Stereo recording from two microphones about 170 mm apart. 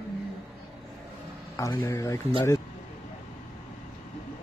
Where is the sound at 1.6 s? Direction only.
20° left (ahead or behind).